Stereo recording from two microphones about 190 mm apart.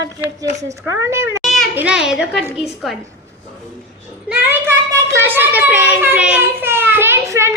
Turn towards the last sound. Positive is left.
turn(degrees=-15)  # may be behind; listen again after turning